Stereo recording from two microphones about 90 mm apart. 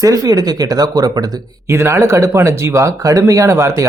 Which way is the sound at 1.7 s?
30° right (ahead or behind).